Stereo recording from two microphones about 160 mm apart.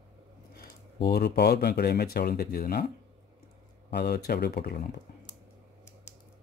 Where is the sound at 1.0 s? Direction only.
80° left.